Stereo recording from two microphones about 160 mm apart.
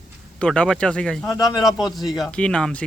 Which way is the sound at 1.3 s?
25° left (ahead or behind).